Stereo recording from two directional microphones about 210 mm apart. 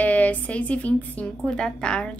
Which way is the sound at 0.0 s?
5° left (ahead or behind).